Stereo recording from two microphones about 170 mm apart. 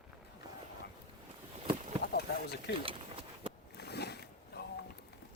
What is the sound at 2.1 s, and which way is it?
Boat, 65° left (ahead or behind).